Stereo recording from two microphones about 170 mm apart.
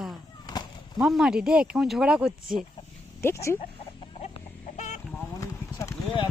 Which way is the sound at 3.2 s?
15° left (ahead or behind).